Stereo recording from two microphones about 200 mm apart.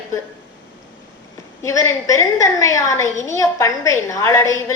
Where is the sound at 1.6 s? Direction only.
15° left (ahead or behind).